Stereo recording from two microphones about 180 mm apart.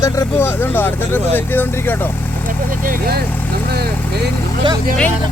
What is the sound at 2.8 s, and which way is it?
Speech, 55° right (ahead or behind).